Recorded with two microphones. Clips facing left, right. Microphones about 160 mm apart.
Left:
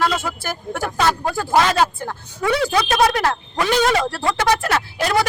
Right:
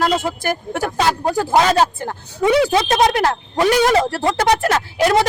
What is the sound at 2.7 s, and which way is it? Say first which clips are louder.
Speech: right 2 dB; 25° right (ahead or behind).